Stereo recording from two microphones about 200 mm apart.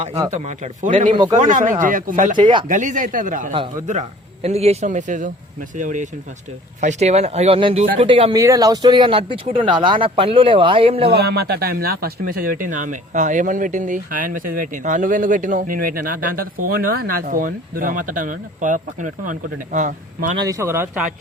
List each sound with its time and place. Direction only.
0.0 s a man's voice: 30° right (ahead or behind)
1.1 s speech: 25° right (ahead or behind)
1.4 s a man's voice: 40° right (ahead or behind)
2.4 s speech: 25° right (ahead or behind)
2.6 s a man's voice: 40° right (ahead or behind)
3.5 s a man's voice: 25° right (ahead or behind)
11.1 s speech: 55° right (ahead or behind)
20.4 s speech: 15° right (ahead or behind)